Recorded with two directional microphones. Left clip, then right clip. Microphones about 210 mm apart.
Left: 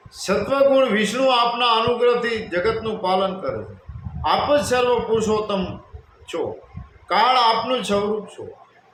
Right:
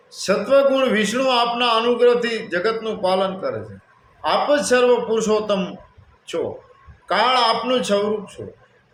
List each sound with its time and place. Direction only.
0.1 s a man's voice: 10° right (ahead or behind)
7.1 s a man's voice: 15° right (ahead or behind)